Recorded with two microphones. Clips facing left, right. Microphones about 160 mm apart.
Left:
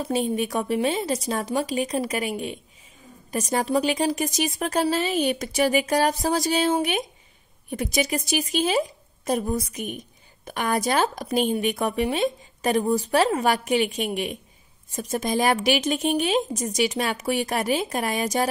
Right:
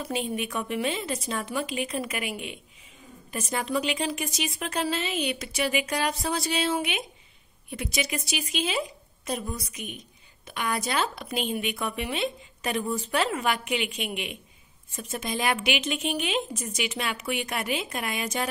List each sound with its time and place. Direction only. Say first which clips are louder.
0.0 s speech: left 6 dB; 40° left (ahead or behind)